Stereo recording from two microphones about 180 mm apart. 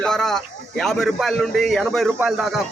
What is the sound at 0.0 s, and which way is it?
Speech, 5° left (ahead or behind).